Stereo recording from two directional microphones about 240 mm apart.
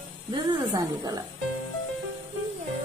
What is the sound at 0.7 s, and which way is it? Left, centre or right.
Music, centre.